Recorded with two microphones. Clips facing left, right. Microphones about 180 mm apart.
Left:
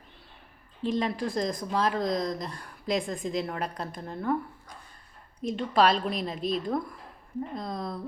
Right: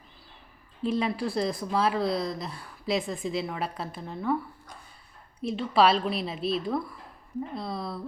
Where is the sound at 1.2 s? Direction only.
5° right (ahead or behind).